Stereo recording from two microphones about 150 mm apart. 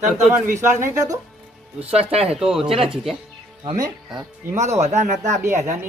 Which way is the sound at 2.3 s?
5° right (ahead or behind).